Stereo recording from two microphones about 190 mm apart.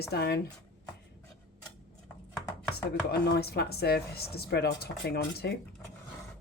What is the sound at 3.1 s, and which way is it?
Speech, 55° left (ahead or behind).